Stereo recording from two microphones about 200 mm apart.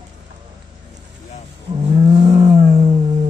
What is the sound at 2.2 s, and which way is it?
Vehicle, 20° right (ahead or behind).